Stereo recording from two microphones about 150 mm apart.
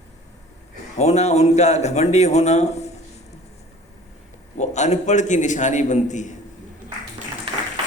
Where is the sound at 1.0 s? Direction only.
50° left (ahead or behind).